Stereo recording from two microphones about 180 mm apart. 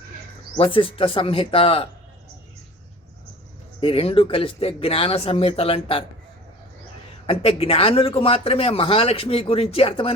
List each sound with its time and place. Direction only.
0.5 s speech: 30° left (ahead or behind)
3.8 s a man's voice: 30° left (ahead or behind)
7.3 s a man's voice: 30° left (ahead or behind)